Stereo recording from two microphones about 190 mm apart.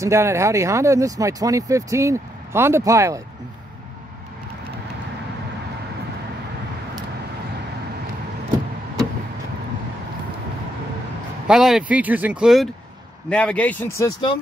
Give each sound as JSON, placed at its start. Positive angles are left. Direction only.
{"t": 0.0, "sound": "speech", "side_deg": -15}
{"t": 11.4, "sound": "speech", "side_deg": 0}